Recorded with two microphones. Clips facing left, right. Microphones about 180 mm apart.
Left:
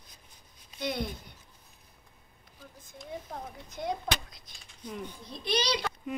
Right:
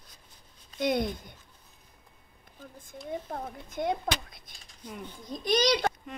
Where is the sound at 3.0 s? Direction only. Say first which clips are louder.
Right 5 dB; 55° right (ahead or behind).